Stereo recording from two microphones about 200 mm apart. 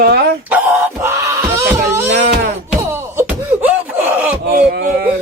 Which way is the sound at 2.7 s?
10° right (ahead or behind).